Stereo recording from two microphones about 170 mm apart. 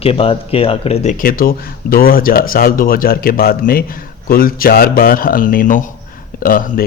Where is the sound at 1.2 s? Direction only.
55° left (ahead or behind).